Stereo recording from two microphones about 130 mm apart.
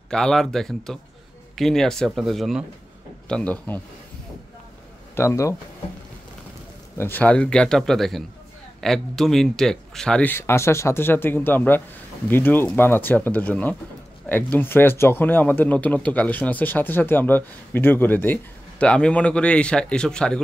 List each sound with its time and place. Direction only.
0.1 s speech: 5° left (ahead or behind)
5.1 s speech: 20° left (ahead or behind)
7.0 s speech: 15° left (ahead or behind)
10.3 s speech: 20° left (ahead or behind)